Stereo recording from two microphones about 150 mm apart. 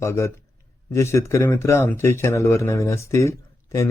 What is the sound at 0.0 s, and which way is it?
A man's voice, 20° left (ahead or behind).